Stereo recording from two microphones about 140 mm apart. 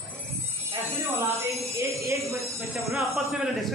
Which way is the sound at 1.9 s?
20° right (ahead or behind).